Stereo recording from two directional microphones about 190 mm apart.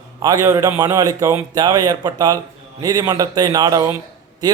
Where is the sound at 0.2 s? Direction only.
20° right (ahead or behind).